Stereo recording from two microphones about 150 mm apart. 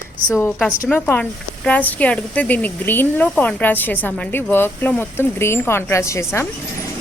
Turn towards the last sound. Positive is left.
turn(degrees=20)  # may be behind; listen again after turning